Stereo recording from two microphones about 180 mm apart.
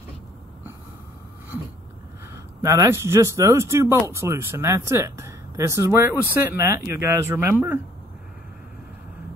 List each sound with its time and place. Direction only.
2.3 s speech: 20° right (ahead or behind)